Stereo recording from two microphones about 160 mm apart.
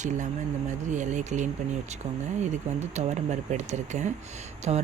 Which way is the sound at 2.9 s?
45° right (ahead or behind).